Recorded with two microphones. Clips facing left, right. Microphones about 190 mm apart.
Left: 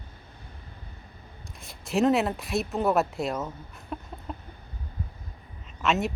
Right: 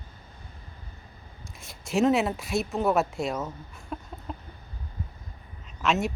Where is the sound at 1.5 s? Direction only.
Centre (ahead or behind).